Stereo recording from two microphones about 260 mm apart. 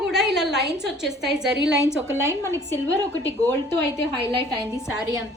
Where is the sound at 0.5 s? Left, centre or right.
Right.